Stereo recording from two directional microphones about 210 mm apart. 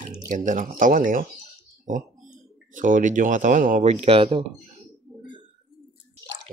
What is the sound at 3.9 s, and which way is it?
Speech, 30° right (ahead or behind).